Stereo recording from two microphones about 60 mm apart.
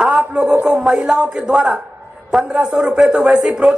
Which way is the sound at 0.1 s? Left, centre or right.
Right.